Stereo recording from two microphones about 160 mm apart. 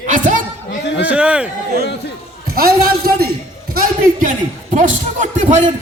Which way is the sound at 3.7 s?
60° right (ahead or behind).